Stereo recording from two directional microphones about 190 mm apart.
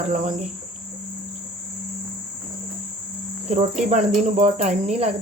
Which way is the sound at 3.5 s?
35° right (ahead or behind).